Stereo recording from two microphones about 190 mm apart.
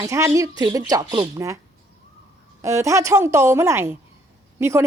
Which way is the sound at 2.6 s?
15° right (ahead or behind).